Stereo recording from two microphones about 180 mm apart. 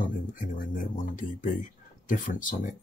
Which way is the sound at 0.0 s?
50° left (ahead or behind).